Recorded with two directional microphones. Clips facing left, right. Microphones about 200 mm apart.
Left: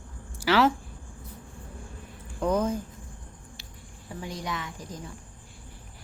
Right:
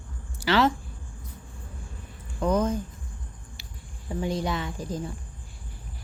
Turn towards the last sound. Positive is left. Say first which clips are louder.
# right 5 dB
turn(degrees=-30)  # may be behind; listen again after turning